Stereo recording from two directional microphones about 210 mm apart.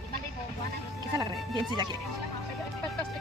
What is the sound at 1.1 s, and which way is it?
Speech, 20° right (ahead or behind).